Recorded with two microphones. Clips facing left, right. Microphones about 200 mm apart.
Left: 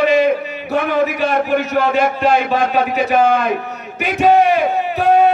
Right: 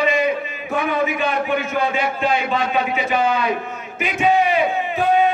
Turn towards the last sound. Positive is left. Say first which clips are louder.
# left 4 dB
turn(degrees=40)  # may be behind; listen again after turning